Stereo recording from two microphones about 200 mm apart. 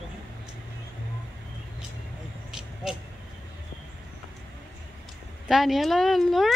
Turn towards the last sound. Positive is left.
turn(degrees=0)  # may be behind; listen again after turning